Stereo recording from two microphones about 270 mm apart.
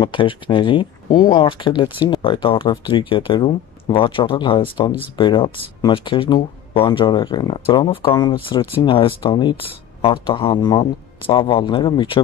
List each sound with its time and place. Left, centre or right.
0.0 s speech: centre